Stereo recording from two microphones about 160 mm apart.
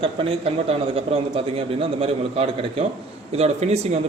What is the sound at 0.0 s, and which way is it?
A man's voice, 35° right (ahead or behind).